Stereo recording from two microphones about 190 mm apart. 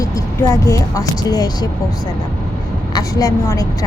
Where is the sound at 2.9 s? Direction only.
20° left (ahead or behind).